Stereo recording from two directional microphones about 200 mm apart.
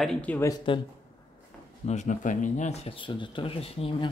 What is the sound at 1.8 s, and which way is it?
Speech, 35° left (ahead or behind).